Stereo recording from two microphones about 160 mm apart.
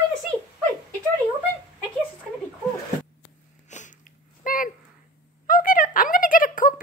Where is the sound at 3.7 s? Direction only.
50° left (ahead or behind).